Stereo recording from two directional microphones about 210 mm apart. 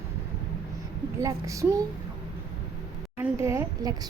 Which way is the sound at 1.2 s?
15° right (ahead or behind).